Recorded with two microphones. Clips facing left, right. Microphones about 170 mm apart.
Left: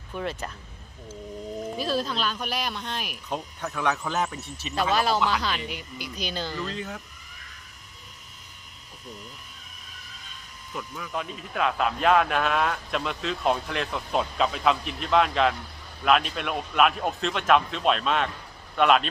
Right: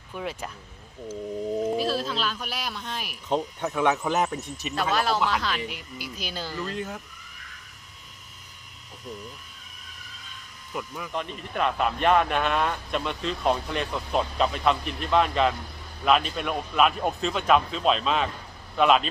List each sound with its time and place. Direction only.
0.1 s speech: 10° right (ahead or behind)
1.8 s a man's voice: 5° right (ahead or behind)
3.3 s speech: 20° right (ahead or behind)
4.7 s a man's voice: centre (ahead or behind)
10.7 s a man's voice: 5° right (ahead or behind)